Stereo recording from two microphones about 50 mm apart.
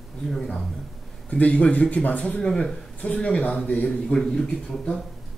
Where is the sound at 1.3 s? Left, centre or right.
Left.